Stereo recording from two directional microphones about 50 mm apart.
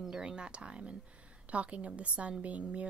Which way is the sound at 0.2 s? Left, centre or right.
Centre.